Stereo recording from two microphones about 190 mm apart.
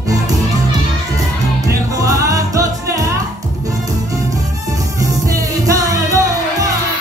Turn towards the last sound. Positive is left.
turn(degrees=-15)  # may be behind; listen again after turning